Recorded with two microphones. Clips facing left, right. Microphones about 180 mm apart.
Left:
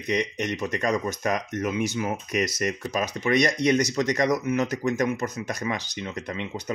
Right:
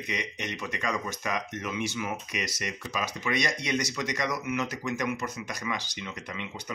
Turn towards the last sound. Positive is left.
turn(degrees=40)  # may be behind; listen again after turning